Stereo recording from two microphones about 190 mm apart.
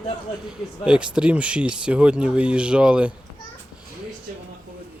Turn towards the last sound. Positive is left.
turn(degrees=-5)  # may be behind; listen again after turning